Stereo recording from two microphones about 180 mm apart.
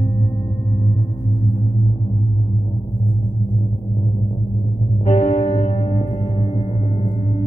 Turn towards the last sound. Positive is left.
turn(degrees=30)  # may be behind; listen again after turning